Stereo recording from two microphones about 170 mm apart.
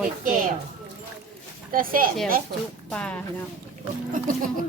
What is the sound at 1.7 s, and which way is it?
Speech, 55° right (ahead or behind).